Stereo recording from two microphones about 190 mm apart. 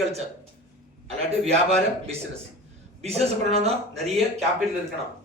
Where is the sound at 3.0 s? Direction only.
35° right (ahead or behind).